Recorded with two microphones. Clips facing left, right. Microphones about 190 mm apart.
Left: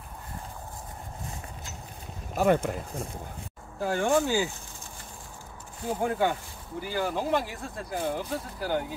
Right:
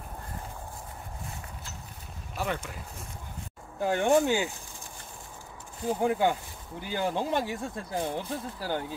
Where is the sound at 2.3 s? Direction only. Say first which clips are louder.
Left 10 dB; 50° left (ahead or behind).